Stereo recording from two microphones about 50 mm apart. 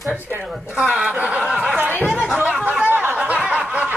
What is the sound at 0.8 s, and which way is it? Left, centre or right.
Speech, right.